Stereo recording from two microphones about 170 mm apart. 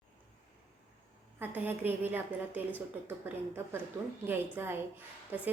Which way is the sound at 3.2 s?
15° right (ahead or behind).